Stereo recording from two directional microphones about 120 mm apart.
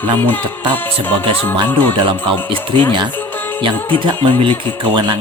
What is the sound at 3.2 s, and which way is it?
Music, 15° left (ahead or behind).